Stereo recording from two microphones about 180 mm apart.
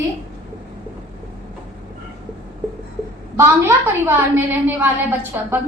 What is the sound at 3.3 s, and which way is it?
A woman's voice, 15° right (ahead or behind).